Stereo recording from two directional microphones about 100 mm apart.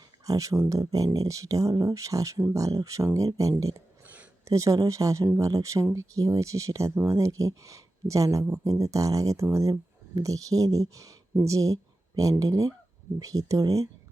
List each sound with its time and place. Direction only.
0.3 s speech: 35° right (ahead or behind)
4.0 s a sound: 15° right (ahead or behind)
4.4 s speech: 30° right (ahead or behind)